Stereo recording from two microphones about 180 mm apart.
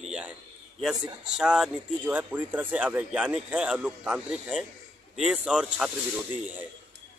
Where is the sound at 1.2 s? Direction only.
5° right (ahead or behind).